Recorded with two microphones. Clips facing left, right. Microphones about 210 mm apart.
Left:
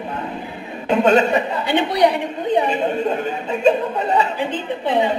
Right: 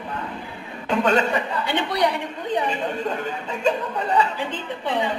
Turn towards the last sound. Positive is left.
turn(degrees=20)  # may be behind; listen again after turning